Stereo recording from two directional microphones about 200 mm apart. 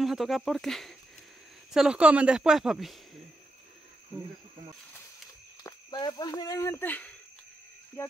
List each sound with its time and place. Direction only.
0.0 s speech: centre (ahead or behind)
5.6 s speech: 20° left (ahead or behind)